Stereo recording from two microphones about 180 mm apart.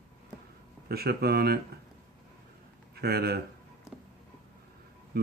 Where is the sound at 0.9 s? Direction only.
60° right (ahead or behind).